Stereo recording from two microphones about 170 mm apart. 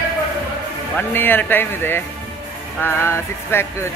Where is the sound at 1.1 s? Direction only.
10° left (ahead or behind).